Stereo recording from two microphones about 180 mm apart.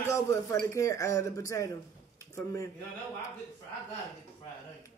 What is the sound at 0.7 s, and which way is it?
Speech, 15° left (ahead or behind).